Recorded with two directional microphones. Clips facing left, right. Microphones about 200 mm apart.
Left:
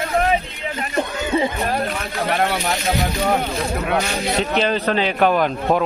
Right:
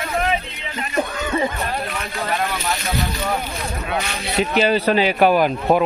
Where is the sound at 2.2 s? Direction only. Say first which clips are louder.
Left 3 dB; 65° left (ahead or behind).